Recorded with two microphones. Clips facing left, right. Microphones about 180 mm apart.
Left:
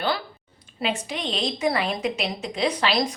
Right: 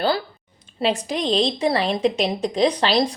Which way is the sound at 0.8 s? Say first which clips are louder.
Right 6 dB; 35° right (ahead or behind).